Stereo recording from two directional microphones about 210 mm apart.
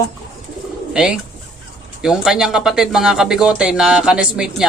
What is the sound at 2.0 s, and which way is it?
Speech, 5° right (ahead or behind).